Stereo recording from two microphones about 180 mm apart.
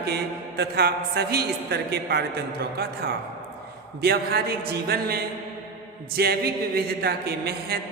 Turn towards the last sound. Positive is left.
turn(degrees=-65)  # may be behind; listen again after turning